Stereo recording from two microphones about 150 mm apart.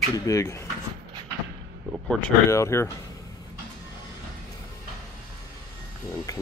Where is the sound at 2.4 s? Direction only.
20° left (ahead or behind).